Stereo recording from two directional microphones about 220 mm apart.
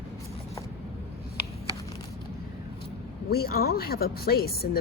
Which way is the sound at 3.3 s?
45° left (ahead or behind).